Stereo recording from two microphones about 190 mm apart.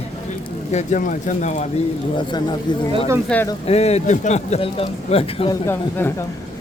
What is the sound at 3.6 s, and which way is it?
Speech, 35° left (ahead or behind).